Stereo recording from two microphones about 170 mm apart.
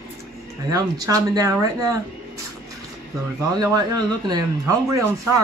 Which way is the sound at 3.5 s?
20° right (ahead or behind).